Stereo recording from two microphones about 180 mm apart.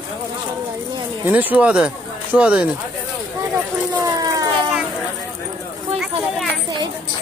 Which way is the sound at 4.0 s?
20° right (ahead or behind).